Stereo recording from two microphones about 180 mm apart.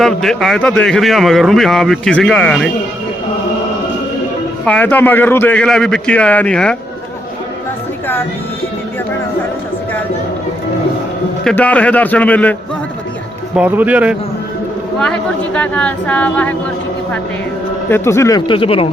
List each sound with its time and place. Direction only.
0.0 s a man's voice: centre (ahead or behind)
4.6 s a man's voice: 10° left (ahead or behind)
11.4 s a man's voice: 5° left (ahead or behind)
13.6 s speech: 10° right (ahead or behind)
14.9 s a man's voice: 5° left (ahead or behind)
17.8 s speech: 15° left (ahead or behind); by 18.9 s 30° left (ahead or behind)